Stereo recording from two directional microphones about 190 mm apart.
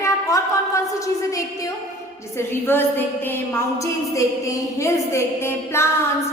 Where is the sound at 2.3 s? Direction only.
10° left (ahead or behind).